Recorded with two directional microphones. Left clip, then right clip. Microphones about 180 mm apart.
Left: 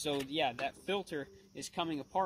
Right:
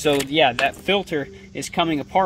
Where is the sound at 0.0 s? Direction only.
5° left (ahead or behind).